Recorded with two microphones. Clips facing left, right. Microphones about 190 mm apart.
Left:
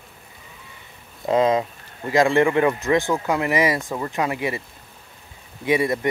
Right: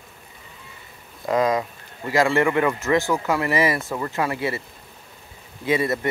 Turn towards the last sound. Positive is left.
turn(degrees=15)  # may be behind; listen again after turning